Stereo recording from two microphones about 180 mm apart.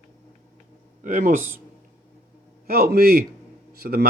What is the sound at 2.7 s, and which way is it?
A man's voice, 60° right (ahead or behind).